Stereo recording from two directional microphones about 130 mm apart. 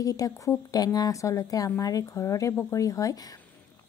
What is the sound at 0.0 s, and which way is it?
Speech, 25° left (ahead or behind).